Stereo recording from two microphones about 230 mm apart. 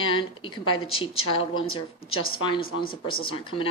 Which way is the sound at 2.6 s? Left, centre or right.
Left.